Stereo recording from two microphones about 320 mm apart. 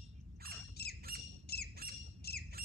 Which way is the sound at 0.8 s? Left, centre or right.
Left.